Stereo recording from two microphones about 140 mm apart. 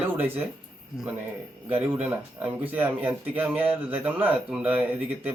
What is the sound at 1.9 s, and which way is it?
A man's voice, 10° right (ahead or behind).